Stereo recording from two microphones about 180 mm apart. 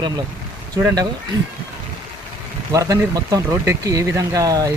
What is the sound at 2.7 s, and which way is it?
Speech, 20° right (ahead or behind).